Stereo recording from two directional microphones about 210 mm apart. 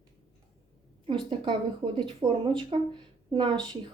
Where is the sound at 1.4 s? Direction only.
25° right (ahead or behind).